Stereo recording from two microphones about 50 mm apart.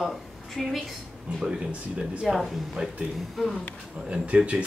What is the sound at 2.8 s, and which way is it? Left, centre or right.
Speech, right.